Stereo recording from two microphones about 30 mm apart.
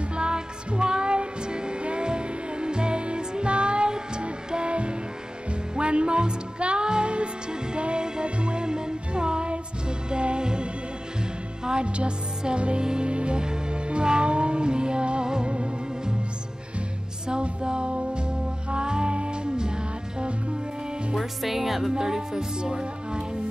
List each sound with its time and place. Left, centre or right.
0.1 s music: right
17.3 s music: right
21.2 s speech: centre
21.9 s music: centre
22.6 s speech: right